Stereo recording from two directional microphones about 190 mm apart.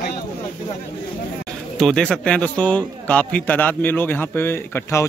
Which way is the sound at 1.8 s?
5° left (ahead or behind).